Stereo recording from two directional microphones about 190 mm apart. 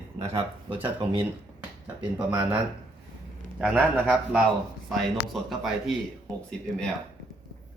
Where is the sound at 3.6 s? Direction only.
10° right (ahead or behind).